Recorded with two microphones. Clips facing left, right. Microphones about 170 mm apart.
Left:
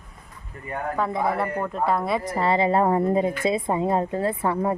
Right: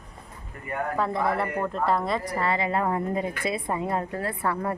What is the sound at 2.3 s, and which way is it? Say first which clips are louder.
A woman's voice: left 8 dB; 30° left (ahead or behind).